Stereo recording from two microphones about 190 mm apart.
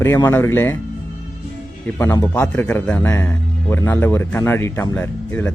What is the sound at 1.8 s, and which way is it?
A man's voice, 10° left (ahead or behind).